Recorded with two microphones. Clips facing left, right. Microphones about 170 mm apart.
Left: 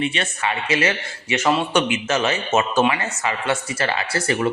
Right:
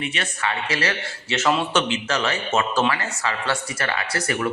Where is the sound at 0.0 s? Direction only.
25° left (ahead or behind).